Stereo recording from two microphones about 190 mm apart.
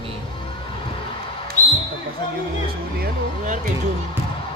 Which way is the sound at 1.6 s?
40° left (ahead or behind).